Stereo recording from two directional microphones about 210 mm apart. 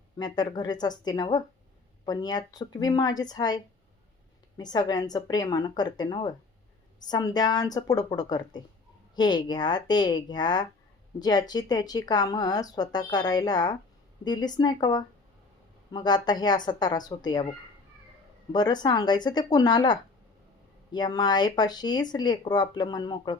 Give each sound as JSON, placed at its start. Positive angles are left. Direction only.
{"t": 0.2, "sound": "speech", "side_deg": 20}
{"t": 18.5, "sound": "speech", "side_deg": 20}